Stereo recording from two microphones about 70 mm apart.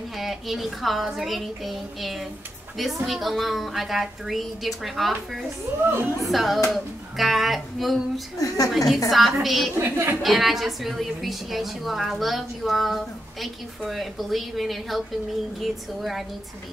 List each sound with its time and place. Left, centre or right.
0.2 s a woman's voice: centre
5.7 s speech: right
6.2 s a woman's voice: centre
8.4 s a woman's voice: left
8.7 s a woman's voice: centre
9.8 s speech: right
10.2 s a woman's voice: centre